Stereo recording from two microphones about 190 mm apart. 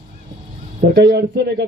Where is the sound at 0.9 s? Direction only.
60° right (ahead or behind).